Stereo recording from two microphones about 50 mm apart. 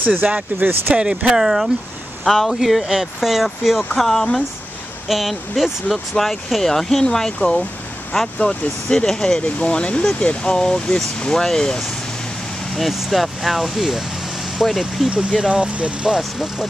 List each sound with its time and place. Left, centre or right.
0.0 s speech: right
0.9 s speech: right
1.4 s speech: centre
2.2 s speech: centre
2.6 s speech: centre
3.9 s speech: centre
8.4 s speech: centre
9.6 s speech: left
12.7 s speech: centre
15.0 s speech: centre
16.2 s speech: centre